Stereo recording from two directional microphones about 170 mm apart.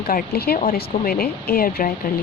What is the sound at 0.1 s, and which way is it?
Speech, 65° left (ahead or behind).